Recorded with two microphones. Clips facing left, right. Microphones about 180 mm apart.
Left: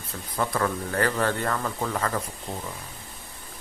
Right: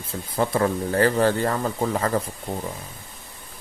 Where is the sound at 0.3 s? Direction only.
30° right (ahead or behind).